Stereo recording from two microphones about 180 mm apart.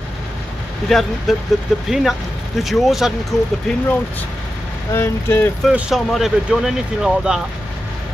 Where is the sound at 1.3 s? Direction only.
Centre (ahead or behind).